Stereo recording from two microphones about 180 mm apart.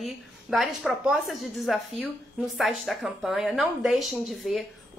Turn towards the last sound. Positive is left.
turn(degrees=0)  # may be behind; listen again after turning